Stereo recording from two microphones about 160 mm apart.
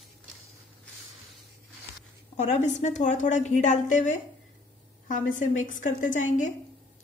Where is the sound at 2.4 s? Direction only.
45° left (ahead or behind).